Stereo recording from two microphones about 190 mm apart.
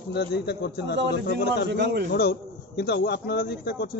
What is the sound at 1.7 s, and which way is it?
Speech, 60° right (ahead or behind).